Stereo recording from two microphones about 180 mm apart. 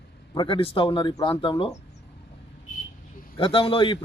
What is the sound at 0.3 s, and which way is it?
A man's voice, 30° left (ahead or behind).